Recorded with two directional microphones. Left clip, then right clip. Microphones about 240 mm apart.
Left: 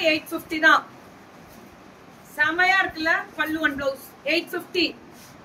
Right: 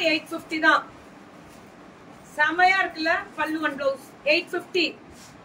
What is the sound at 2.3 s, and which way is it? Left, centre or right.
A woman's voice, centre.